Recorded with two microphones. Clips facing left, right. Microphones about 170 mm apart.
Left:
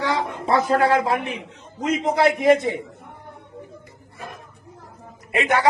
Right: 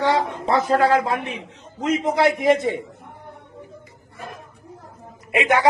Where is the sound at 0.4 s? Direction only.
35° right (ahead or behind).